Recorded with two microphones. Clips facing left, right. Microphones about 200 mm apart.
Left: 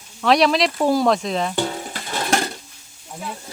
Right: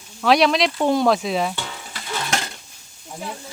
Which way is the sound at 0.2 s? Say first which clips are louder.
Even; centre (ahead or behind).